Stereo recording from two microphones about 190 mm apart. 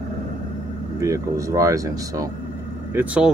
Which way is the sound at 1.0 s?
15° right (ahead or behind).